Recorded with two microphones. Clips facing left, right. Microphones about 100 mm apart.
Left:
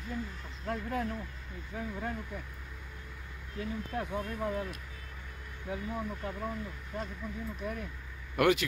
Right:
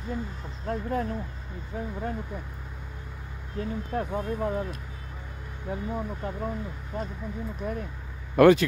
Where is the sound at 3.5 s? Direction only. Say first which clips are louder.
Right 6 dB; 45° right (ahead or behind).